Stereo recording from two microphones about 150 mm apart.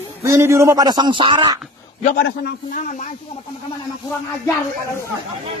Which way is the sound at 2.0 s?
65° left (ahead or behind).